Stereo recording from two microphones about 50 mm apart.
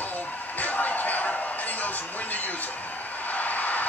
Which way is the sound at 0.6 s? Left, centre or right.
Left.